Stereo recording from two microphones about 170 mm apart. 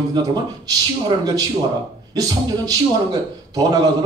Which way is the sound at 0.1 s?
25° right (ahead or behind).